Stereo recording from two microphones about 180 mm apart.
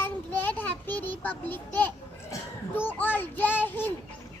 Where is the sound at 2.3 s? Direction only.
10° left (ahead or behind).